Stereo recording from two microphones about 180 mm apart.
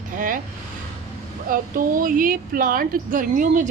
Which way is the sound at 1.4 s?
50° right (ahead or behind).